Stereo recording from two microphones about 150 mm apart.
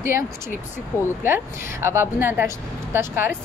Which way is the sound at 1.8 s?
15° right (ahead or behind).